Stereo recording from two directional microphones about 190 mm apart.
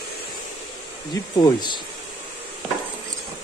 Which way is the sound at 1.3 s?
20° left (ahead or behind).